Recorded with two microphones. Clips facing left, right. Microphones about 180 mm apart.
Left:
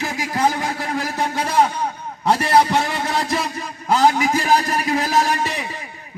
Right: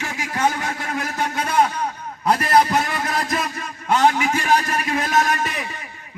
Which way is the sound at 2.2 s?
25° left (ahead or behind).